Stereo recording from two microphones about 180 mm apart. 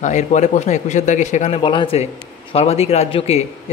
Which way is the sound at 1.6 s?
30° left (ahead or behind).